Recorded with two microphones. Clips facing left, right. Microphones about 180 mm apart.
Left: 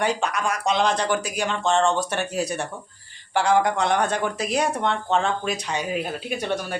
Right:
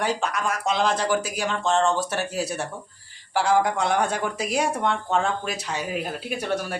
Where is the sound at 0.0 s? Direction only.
Centre (ahead or behind).